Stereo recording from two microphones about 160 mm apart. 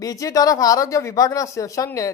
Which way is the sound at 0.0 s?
20° left (ahead or behind).